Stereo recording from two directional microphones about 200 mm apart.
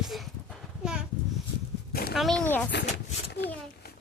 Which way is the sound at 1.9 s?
50° left (ahead or behind).